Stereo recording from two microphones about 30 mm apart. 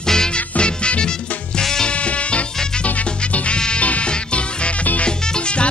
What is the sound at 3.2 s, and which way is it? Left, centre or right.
Music, left.